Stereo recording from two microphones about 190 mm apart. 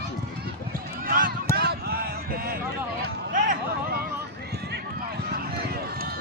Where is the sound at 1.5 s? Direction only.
55° right (ahead or behind).